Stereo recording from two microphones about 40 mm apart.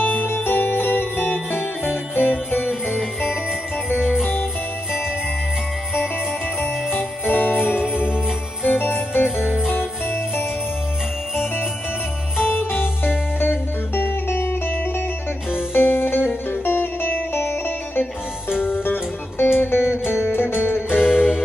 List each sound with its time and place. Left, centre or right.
0.0 s music: left
4.0 s music: centre
6.6 s jingle bell: left
12.4 s music: left
20.9 s music: centre